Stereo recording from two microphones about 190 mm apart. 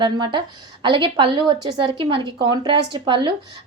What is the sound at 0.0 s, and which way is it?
Speech, 25° right (ahead or behind).